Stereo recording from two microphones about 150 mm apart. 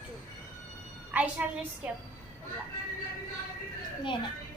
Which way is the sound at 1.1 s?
10° right (ahead or behind).